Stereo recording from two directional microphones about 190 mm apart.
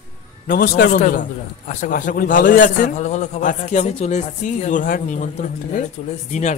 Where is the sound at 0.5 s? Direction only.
50° left (ahead or behind).